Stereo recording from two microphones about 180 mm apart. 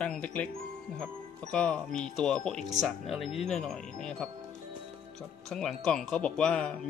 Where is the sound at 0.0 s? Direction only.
5° left (ahead or behind).